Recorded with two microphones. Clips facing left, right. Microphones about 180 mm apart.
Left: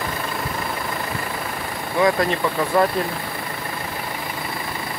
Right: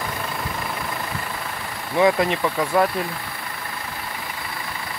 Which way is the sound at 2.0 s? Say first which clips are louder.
Right 1 dB; 20° right (ahead or behind).